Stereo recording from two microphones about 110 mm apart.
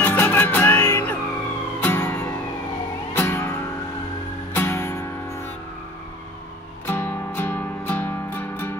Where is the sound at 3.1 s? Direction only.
20° left (ahead or behind).